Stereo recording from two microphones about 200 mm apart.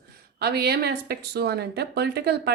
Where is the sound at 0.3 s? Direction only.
55° right (ahead or behind).